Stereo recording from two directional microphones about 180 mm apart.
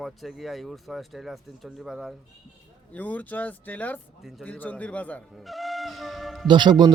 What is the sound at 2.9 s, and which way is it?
Speech, 10° left (ahead or behind).